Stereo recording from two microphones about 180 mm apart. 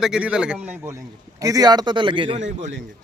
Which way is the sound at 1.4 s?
20° right (ahead or behind).